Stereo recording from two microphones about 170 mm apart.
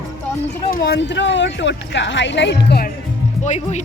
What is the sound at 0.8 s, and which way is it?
Speech, 90° left.